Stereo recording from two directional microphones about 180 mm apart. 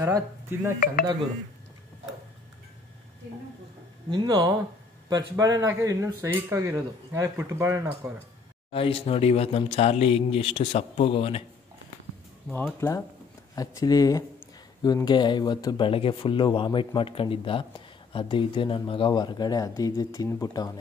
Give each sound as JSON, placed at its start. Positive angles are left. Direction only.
{"t": 0.0, "sound": "speech", "side_deg": -15}
{"t": 4.1, "sound": "speech", "side_deg": -25}
{"t": 8.7, "sound": "speech", "side_deg": 30}
{"t": 12.8, "sound": "speech", "side_deg": 15}